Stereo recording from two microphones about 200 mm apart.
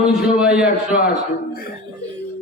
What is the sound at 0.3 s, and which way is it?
Speech, 5° right (ahead or behind).